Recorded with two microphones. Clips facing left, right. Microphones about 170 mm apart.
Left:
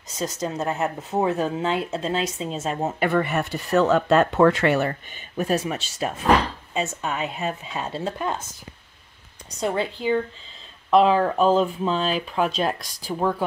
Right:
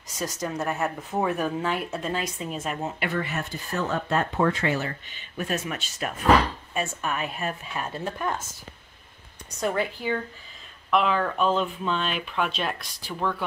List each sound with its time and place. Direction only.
0.2 s speech: 25° left (ahead or behind)
2.8 s speech: 50° left (ahead or behind)
5.4 s speech: 35° left (ahead or behind)
9.6 s speech: 20° left (ahead or behind)
10.9 s speech: 35° left (ahead or behind)